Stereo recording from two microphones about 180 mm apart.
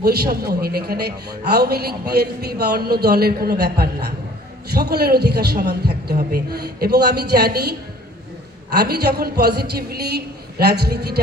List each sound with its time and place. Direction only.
0.0 s a man's voice: 60° right (ahead or behind)